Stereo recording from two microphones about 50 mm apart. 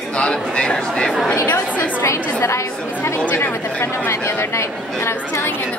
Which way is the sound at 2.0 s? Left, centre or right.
Left.